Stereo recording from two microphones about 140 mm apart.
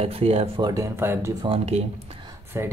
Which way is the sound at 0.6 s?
20° right (ahead or behind).